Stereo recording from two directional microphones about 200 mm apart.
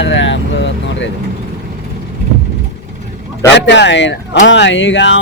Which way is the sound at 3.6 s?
60° left (ahead or behind).